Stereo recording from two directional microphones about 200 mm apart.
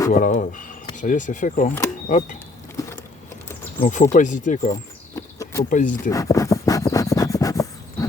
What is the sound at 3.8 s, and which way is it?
Speech, 40° left (ahead or behind).